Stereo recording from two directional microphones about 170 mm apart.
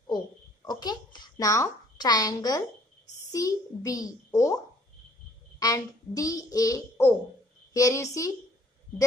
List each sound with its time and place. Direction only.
0.7 s a sound: 25° left (ahead or behind)
3.3 s a child's voice: 20° left (ahead or behind)
5.6 s a child's voice: 20° left (ahead or behind)